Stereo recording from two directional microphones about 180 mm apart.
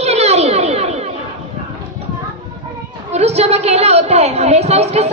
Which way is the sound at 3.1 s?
35° right (ahead or behind).